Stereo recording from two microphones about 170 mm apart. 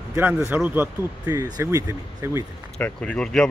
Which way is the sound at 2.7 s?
10° left (ahead or behind).